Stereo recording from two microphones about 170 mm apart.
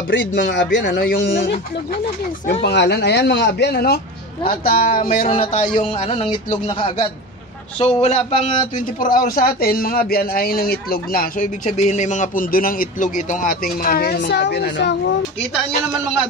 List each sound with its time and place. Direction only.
0.1 s speech: 90° left
1.1 s speech: 80° left
2.6 s speech: 80° left; by 4.7 s 60° left (ahead or behind)
5.2 s speech: 35° left (ahead or behind)
8.7 s speech: 55° left (ahead or behind); by 15.1 s 75° left (ahead or behind)